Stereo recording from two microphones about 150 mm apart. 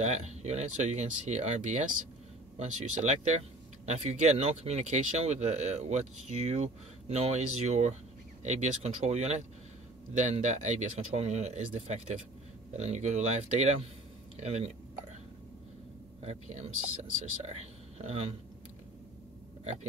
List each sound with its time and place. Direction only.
0.0 s speech: 50° right (ahead or behind)
16.2 s speech: 50° right (ahead or behind)
19.6 s speech: 50° right (ahead or behind)